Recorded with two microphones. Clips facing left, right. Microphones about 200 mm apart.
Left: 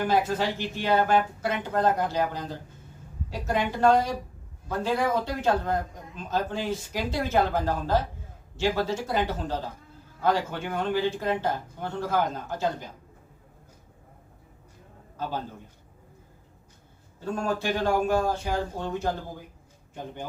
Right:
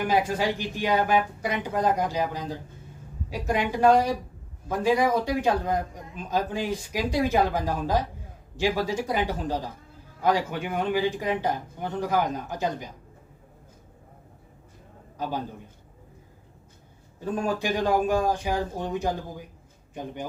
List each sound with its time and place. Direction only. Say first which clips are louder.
0.0 s a man's voice: even; 10° right (ahead or behind)
15.2 s a man's voice: right 2 dB; 15° right (ahead or behind)
17.2 s a man's voice: right 1 dB; 15° right (ahead or behind)